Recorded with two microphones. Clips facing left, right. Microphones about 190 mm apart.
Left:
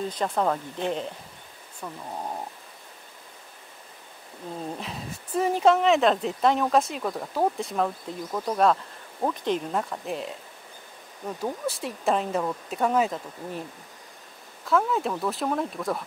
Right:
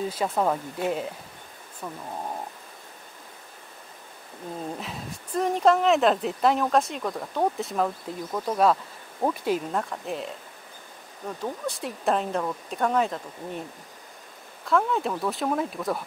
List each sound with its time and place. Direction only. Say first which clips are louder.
0.0 s speech: right 1 dB; 5° right (ahead or behind)
4.7 s speech: even; centre (ahead or behind)